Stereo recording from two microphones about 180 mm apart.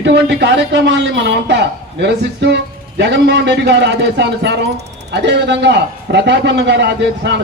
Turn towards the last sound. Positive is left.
turn(degrees=-75)  # may be behind; listen again after turning